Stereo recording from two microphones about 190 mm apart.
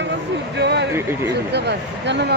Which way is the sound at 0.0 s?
65° right (ahead or behind).